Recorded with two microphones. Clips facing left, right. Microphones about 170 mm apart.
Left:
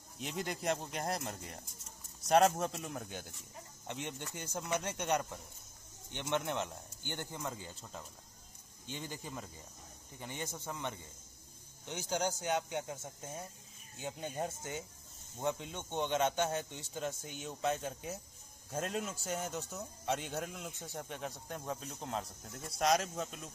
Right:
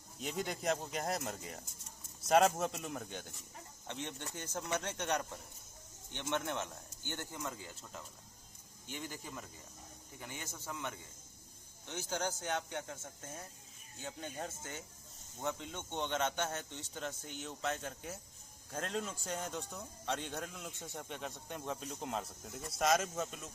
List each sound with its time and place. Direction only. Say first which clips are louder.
0.2 s a man's voice: even; centre (ahead or behind); by 7.7 s 15° left (ahead or behind)
8.8 s a man's voice: left 1 dB; 20° left (ahead or behind); by 23.5 s centre (ahead or behind)